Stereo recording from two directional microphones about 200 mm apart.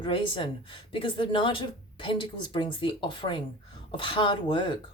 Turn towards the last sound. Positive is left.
turn(degrees=25)  # may be behind; listen again after turning